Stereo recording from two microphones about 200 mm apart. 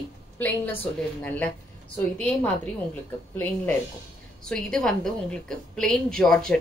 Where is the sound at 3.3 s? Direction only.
10° left (ahead or behind).